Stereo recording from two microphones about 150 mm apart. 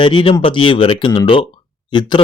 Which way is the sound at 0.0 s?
35° left (ahead or behind).